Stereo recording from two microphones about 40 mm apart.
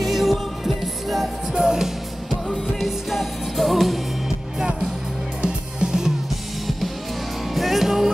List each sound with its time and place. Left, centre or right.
0.0 s music: centre
1.5 s music: centre
5.4 s music: centre
7.5 s music: centre